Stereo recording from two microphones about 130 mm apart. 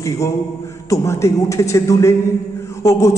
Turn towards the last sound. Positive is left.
turn(degrees=25)  # may be behind; listen again after turning